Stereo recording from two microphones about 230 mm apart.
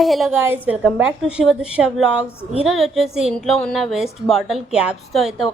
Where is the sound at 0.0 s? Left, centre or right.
Centre.